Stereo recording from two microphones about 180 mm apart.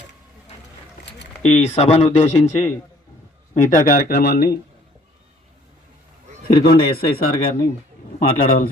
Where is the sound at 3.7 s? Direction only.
50° left (ahead or behind).